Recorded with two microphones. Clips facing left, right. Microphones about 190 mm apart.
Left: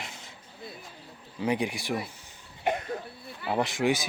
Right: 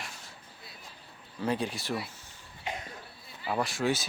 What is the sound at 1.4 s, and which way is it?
Speech, 15° left (ahead or behind).